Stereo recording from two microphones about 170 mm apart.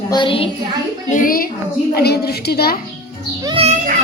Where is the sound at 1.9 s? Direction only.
70° left (ahead or behind).